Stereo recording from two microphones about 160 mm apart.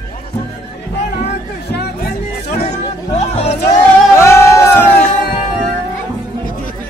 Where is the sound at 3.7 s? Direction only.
15° left (ahead or behind).